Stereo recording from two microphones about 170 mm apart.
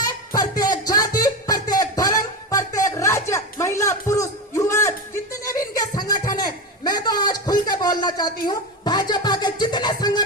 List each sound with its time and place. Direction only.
0.0 s music: 20° left (ahead or behind)